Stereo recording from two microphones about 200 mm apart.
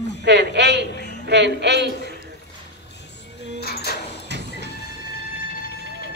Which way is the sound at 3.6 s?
50° left (ahead or behind).